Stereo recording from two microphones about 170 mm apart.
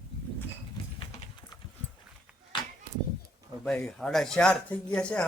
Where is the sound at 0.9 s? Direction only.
30° left (ahead or behind).